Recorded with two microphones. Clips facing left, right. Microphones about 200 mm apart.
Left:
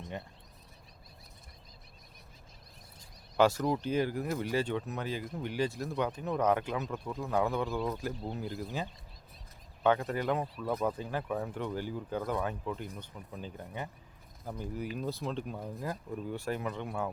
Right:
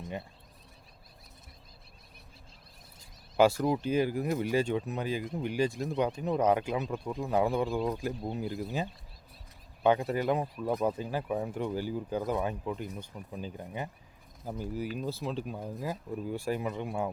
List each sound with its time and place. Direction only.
0.0 s speech: 10° right (ahead or behind)
3.3 s speech: 10° right (ahead or behind)
5.9 s speech: 25° right (ahead or behind)
6.1 s speech: 15° right (ahead or behind)